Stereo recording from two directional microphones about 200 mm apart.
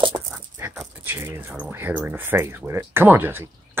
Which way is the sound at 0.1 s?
25° right (ahead or behind).